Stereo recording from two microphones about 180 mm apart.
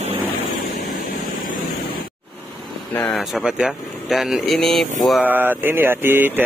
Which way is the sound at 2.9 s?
10° left (ahead or behind).